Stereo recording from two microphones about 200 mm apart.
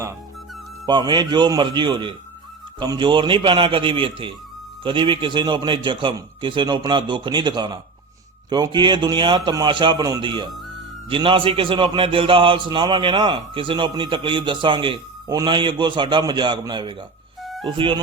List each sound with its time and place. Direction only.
0.9 s a man's voice: 20° right (ahead or behind)